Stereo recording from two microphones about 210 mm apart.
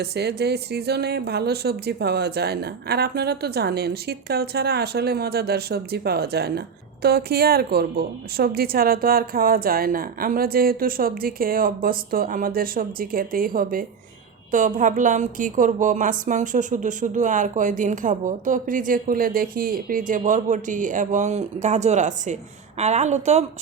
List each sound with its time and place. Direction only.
0.0 s a woman's voice: 50° right (ahead or behind); by 23.5 s 30° right (ahead or behind)